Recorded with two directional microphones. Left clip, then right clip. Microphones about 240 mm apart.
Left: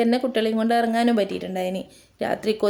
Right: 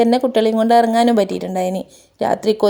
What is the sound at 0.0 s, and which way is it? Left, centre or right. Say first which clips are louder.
A woman's voice: right 7 dB; right.